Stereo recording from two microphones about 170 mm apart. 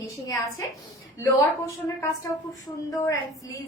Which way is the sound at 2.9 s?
20° left (ahead or behind).